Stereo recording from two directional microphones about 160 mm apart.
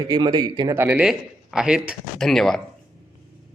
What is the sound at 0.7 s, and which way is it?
Speech, 10° right (ahead or behind).